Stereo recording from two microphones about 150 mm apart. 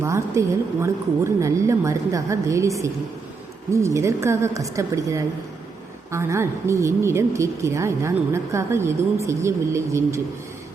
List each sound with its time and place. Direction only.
0.0 s a woman's voice: 20° right (ahead or behind)